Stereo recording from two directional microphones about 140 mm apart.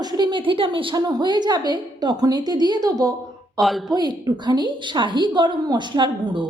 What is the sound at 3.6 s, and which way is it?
Speech, centre (ahead or behind).